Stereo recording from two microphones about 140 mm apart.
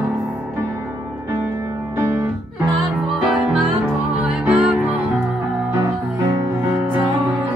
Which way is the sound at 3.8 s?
10° right (ahead or behind).